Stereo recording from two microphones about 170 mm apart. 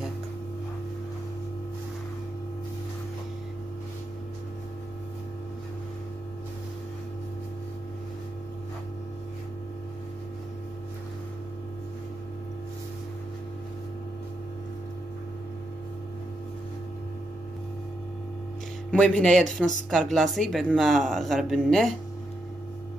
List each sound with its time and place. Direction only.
18.9 s speech: 5° left (ahead or behind)